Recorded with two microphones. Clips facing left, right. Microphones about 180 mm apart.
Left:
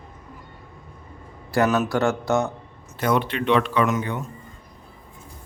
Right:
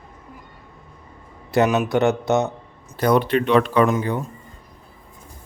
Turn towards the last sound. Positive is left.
turn(degrees=-30)  # may be behind; listen again after turning